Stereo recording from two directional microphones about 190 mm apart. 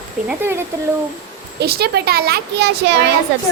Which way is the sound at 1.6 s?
55° right (ahead or behind).